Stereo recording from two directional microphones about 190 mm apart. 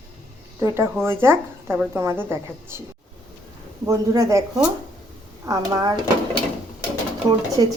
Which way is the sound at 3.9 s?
15° right (ahead or behind).